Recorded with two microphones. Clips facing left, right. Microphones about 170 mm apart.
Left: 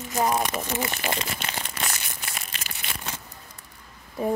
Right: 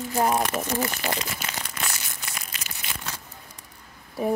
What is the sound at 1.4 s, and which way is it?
Crumpling, 25° left (ahead or behind).